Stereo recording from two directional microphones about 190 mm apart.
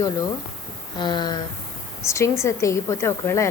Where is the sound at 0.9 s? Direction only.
25° left (ahead or behind).